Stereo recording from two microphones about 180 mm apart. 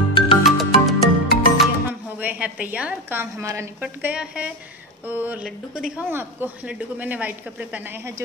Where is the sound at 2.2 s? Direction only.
10° right (ahead or behind).